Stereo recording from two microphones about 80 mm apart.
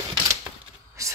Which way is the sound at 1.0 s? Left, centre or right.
Right.